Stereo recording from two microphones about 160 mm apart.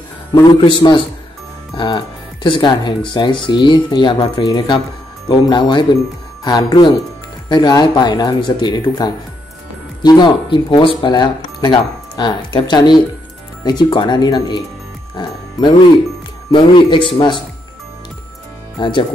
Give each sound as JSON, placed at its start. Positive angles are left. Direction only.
{"t": 0.3, "sound": "speech", "side_deg": 30}
{"t": 15.2, "sound": "music", "side_deg": 30}
{"t": 16.5, "sound": "speech", "side_deg": 30}
{"t": 18.8, "sound": "speech", "side_deg": 30}